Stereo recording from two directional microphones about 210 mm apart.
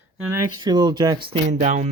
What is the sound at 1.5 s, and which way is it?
Speech, 35° right (ahead or behind).